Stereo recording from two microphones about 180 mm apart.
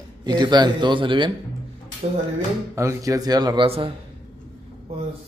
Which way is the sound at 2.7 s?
15° right (ahead or behind).